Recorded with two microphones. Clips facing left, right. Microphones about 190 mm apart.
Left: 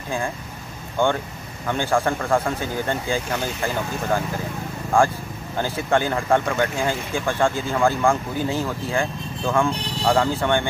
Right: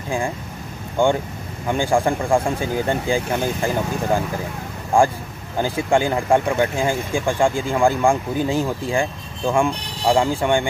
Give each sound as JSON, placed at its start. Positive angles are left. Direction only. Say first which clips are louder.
{"t": 1.0, "sound": "speech", "louder": "right 3 dB", "side_deg": -15}
{"t": 5.6, "sound": "speech", "louder": "right 3 dB", "side_deg": -15}